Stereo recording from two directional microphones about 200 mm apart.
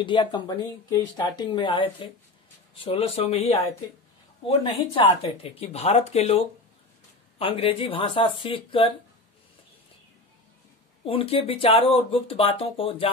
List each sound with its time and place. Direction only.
0.0 s speech: 25° left (ahead or behind)
11.1 s speech: 30° left (ahead or behind)